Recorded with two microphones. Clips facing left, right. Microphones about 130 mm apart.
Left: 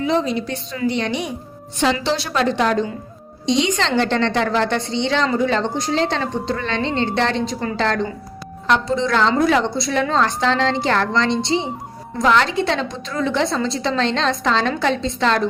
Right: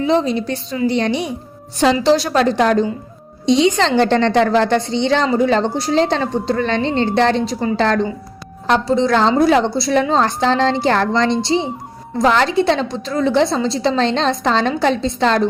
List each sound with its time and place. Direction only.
0.0 s a woman's voice: 30° right (ahead or behind)